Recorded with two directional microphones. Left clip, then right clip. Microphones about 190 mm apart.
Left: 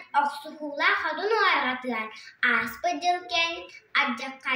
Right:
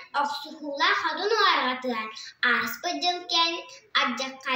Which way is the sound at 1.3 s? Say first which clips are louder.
Right 1 dB; 25° left (ahead or behind).